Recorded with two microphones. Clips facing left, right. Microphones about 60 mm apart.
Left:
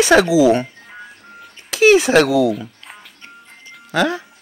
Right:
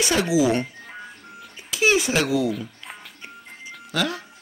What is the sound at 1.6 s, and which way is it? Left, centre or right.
Speech, left.